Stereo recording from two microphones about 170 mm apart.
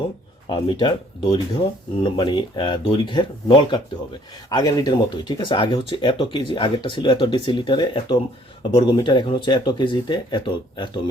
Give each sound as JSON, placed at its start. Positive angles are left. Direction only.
{"t": 0.4, "sound": "speech", "side_deg": 25}